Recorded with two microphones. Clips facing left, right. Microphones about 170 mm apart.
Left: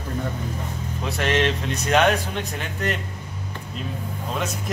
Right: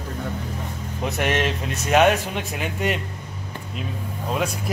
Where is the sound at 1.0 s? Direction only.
15° right (ahead or behind).